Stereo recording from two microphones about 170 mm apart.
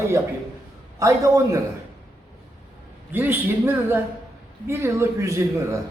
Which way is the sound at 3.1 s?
10° right (ahead or behind).